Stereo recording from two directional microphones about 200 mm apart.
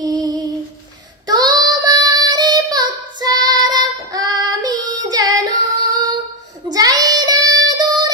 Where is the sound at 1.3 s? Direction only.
20° right (ahead or behind).